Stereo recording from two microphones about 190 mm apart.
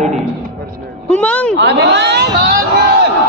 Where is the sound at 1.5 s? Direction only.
65° right (ahead or behind).